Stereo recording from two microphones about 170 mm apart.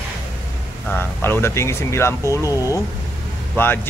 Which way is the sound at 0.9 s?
15° left (ahead or behind).